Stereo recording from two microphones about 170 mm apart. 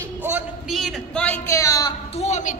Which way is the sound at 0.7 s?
5° left (ahead or behind).